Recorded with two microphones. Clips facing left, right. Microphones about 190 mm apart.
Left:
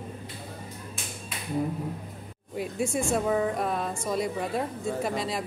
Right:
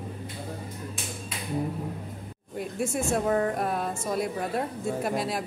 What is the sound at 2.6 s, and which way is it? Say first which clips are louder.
Speech: left 1 dB; centre (ahead or behind).